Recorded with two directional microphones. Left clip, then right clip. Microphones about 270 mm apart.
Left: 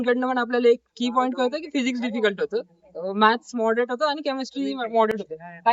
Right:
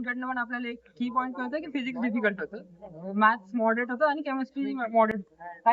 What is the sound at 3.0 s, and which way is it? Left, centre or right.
Speech, centre.